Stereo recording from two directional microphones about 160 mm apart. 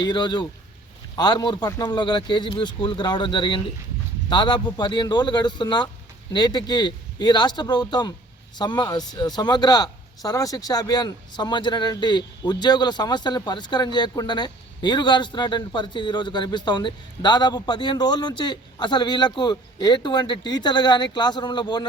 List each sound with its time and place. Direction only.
0.0 s a man's voice: 30° left (ahead or behind)